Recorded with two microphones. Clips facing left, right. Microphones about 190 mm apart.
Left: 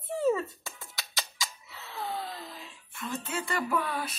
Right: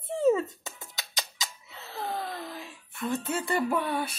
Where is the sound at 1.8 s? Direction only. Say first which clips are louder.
Right 2 dB; 45° right (ahead or behind).